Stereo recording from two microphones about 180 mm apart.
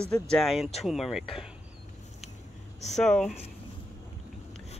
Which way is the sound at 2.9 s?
Centre (ahead or behind).